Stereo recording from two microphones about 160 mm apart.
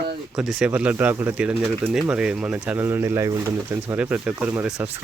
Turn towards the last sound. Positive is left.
turn(degrees=-10)  # may be behind; listen again after turning